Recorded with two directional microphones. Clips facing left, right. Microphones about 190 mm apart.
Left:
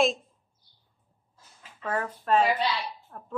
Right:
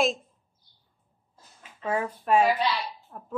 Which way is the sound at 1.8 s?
10° right (ahead or behind).